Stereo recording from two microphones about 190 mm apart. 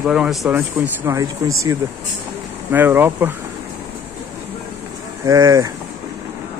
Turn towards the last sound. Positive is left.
turn(degrees=-15)  # may be behind; listen again after turning